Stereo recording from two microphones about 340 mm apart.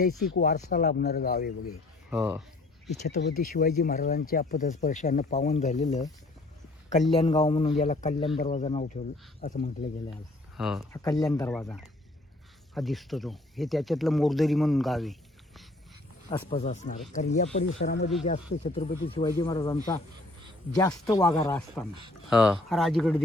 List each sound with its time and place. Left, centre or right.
0.3 s speech: left
2.0 s speech: centre
2.9 s speech: left
7.2 s speech: centre
10.6 s speech: centre
11.0 s speech: centre
16.3 s speech: centre
17.7 s speech: left
18.3 s speech: centre